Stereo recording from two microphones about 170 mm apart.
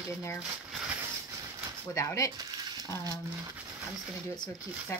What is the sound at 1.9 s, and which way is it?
Speech, 15° left (ahead or behind).